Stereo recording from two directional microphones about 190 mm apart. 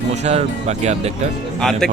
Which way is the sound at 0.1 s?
35° right (ahead or behind).